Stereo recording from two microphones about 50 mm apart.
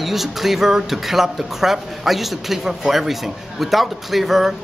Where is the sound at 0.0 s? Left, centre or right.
Centre.